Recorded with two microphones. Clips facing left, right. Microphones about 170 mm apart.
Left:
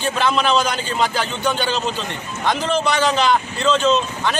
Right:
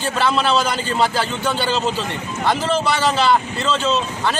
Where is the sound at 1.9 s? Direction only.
5° right (ahead or behind).